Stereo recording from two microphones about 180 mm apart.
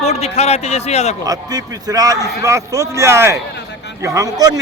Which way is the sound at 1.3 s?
20° right (ahead or behind).